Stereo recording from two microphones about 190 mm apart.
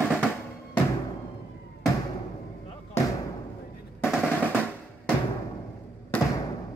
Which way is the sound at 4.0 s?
5° right (ahead or behind).